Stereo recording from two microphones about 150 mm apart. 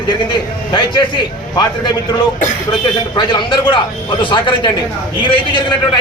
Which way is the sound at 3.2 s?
30° left (ahead or behind).